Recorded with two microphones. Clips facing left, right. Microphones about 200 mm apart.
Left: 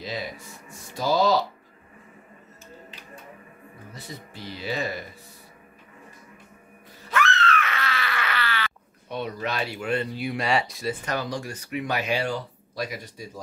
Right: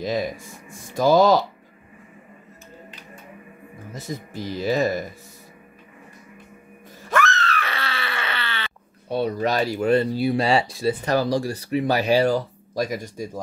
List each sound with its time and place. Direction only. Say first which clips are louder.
0.0 s speech: right 8 dB; 45° right (ahead or behind)
3.9 s speech: right 9 dB; 45° right (ahead or behind)
7.1 s a sound: right 2 dB; 45° right (ahead or behind)